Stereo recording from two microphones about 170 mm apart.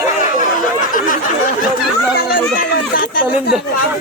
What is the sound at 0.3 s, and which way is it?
Chatter, 50° left (ahead or behind).